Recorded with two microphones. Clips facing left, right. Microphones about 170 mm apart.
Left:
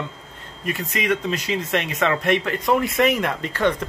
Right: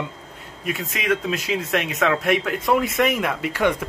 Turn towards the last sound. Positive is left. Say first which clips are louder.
# even
turn(degrees=-10)  # may be behind; listen again after turning